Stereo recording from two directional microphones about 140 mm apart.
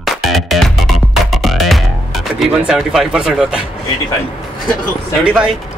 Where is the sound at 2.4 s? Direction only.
5° right (ahead or behind).